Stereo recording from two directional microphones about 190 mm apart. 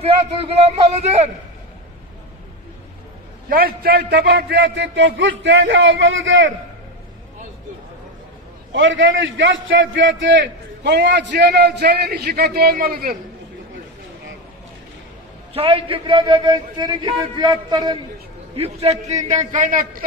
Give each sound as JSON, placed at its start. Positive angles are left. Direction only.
{"t": 0.0, "sound": "a man's voice", "side_deg": -35}
{"t": 3.4, "sound": "a man's voice", "side_deg": -50}
{"t": 8.7, "sound": "a man's voice", "side_deg": -85}
{"t": 15.5, "sound": "a man's voice", "side_deg": -30}